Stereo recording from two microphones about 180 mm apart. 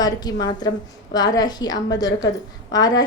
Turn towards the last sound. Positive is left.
turn(degrees=20)  # may be behind; listen again after turning